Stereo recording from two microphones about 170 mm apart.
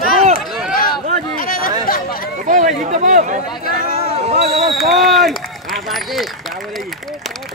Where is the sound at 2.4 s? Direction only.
50° right (ahead or behind).